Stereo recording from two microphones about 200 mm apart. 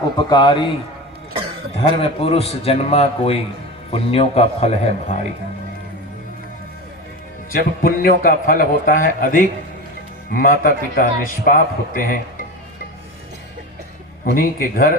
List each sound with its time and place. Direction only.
0.3 s speech: 25° left (ahead or behind)
1.7 s a man's voice: 30° left (ahead or behind)
7.5 s a man's voice: 45° left (ahead or behind)
14.3 s a man's voice: 45° left (ahead or behind)